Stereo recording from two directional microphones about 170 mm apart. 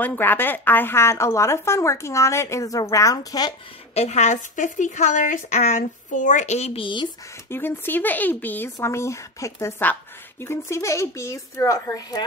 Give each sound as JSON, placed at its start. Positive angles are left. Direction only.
{"t": 0.0, "sound": "speech", "side_deg": 10}
{"t": 3.9, "sound": "a woman's voice", "side_deg": 40}
{"t": 7.4, "sound": "speech", "side_deg": 15}